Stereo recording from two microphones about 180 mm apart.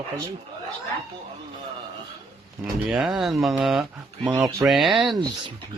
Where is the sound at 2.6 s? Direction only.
5° right (ahead or behind).